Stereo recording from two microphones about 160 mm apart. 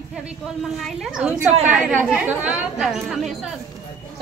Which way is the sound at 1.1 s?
5° right (ahead or behind).